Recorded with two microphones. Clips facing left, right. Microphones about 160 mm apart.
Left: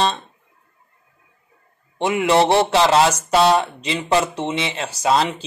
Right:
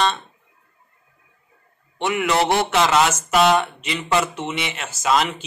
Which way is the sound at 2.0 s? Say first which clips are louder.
Left 4 dB; 30° left (ahead or behind).